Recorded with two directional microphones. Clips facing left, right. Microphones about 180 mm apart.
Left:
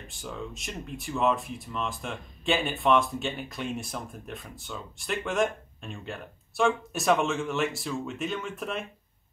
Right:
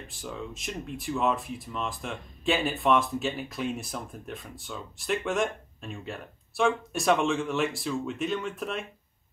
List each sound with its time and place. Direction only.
0.1 s speech: centre (ahead or behind)